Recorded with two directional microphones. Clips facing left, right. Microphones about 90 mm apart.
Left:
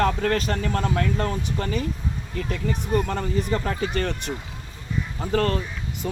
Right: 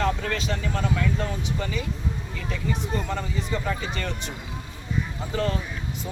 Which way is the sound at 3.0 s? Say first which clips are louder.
Left 4 dB; 55° left (ahead or behind).